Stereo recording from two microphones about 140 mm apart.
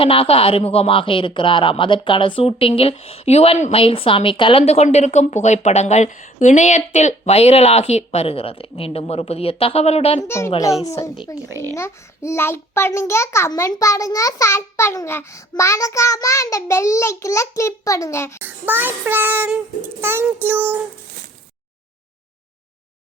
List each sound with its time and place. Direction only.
0.0 s speech: 40° left (ahead or behind)
4.6 s a woman's voice: 50° left (ahead or behind)
10.2 s a child's voice: 20° left (ahead or behind)
18.4 s child singing: 15° right (ahead or behind)